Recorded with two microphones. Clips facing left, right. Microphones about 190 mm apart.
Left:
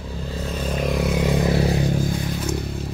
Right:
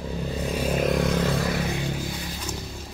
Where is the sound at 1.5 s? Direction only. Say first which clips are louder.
Left 7 dB; 35° left (ahead or behind).